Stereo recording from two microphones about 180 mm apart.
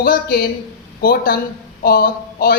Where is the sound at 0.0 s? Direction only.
55° left (ahead or behind).